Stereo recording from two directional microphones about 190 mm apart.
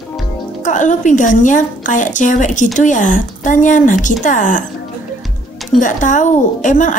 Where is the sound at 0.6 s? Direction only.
40° left (ahead or behind).